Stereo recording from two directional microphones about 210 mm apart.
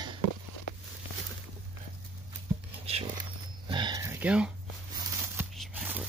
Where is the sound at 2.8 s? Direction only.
30° right (ahead or behind); by 4.5 s 5° right (ahead or behind).